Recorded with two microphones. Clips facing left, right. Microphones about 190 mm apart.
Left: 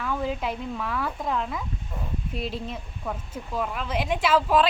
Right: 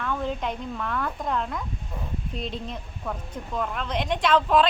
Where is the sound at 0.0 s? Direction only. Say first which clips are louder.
Even; 5° left (ahead or behind).